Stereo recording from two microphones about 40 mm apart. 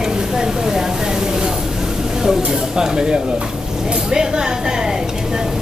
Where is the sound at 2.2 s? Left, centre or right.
Centre.